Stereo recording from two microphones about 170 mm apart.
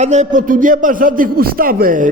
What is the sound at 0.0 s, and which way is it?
A man's voice, 45° right (ahead or behind).